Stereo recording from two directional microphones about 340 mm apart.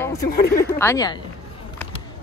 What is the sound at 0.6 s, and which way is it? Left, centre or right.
Speech, centre.